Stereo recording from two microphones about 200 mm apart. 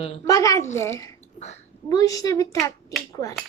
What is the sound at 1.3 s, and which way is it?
Speech, 35° left (ahead or behind).